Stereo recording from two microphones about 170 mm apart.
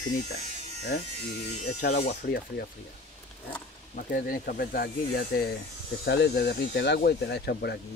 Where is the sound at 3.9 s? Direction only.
55° left (ahead or behind).